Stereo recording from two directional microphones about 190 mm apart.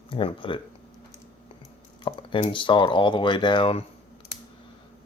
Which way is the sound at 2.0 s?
25° left (ahead or behind).